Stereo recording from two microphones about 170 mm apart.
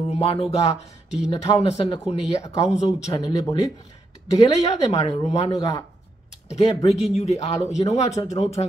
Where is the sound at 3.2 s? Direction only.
25° left (ahead or behind).